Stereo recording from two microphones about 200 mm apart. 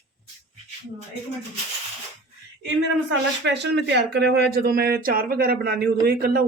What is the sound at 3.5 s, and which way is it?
Speech, 60° right (ahead or behind).